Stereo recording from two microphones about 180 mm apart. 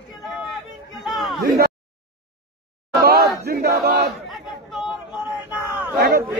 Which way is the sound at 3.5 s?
55° right (ahead or behind).